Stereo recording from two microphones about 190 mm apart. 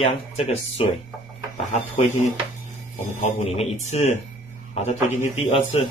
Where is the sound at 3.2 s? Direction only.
35° left (ahead or behind).